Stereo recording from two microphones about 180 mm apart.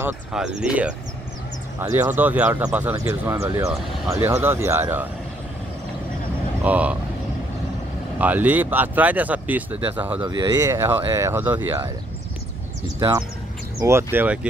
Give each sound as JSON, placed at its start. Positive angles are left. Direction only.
{"t": 0.0, "sound": "speech", "side_deg": -5}
{"t": 6.6, "sound": "speech", "side_deg": -10}
{"t": 8.2, "sound": "speech", "side_deg": -10}
{"t": 10.2, "sound": "speech", "side_deg": -20}
{"t": 13.7, "sound": "speech", "side_deg": -15}